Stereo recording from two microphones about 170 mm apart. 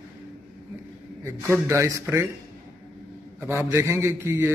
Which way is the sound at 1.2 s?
15° right (ahead or behind).